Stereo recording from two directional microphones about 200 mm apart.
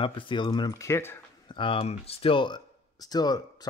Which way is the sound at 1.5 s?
25° left (ahead or behind).